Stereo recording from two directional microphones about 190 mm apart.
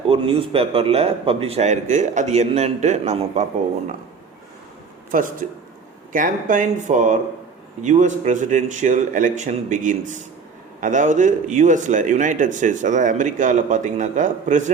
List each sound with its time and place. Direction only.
0.1 s a man's voice: 30° right (ahead or behind)
5.1 s a man's voice: 45° right (ahead or behind)